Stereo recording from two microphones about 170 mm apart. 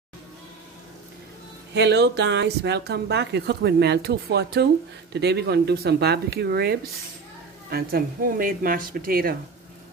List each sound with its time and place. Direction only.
1.7 s speech: 90° right; by 9.4 s 60° right (ahead or behind)